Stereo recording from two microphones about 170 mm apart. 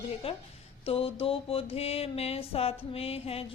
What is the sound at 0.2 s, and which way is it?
Speech, 35° left (ahead or behind).